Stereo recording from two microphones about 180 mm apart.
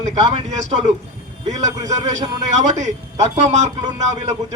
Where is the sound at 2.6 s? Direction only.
40° right (ahead or behind).